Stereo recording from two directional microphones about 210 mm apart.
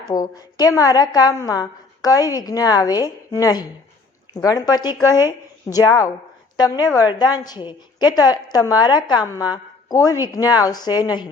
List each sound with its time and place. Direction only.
0.1 s a woman's voice: 20° left (ahead or behind)